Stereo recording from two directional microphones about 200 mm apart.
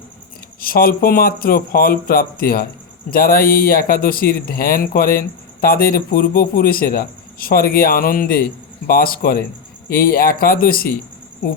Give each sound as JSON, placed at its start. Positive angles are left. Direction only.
{"t": 0.6, "sound": "speech", "side_deg": 45}